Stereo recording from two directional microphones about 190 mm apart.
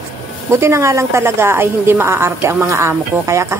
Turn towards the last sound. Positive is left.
turn(degrees=-15)  # may be behind; listen again after turning